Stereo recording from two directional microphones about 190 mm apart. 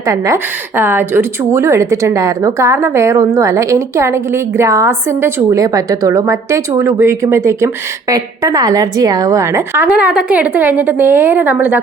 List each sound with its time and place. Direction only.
0.0 s a woman's voice: 15° right (ahead or behind)